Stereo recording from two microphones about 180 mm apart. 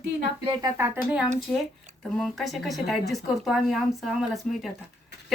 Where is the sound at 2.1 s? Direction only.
Centre (ahead or behind).